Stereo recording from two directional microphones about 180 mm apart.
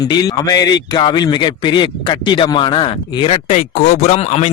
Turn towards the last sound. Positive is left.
turn(degrees=35)  # may be behind; listen again after turning